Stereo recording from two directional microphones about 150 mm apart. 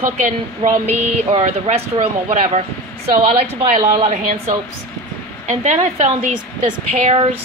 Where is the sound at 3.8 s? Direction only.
65° right (ahead or behind).